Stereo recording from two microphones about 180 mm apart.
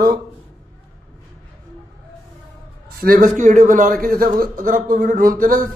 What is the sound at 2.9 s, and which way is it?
A man's voice, 55° right (ahead or behind).